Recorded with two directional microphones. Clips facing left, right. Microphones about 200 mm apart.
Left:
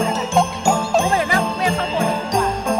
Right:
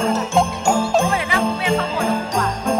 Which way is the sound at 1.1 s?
40° left (ahead or behind).